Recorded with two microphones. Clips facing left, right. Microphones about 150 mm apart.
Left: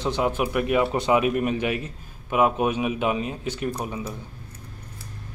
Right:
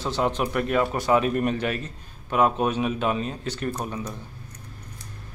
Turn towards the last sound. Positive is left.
turn(degrees=10)  # may be behind; listen again after turning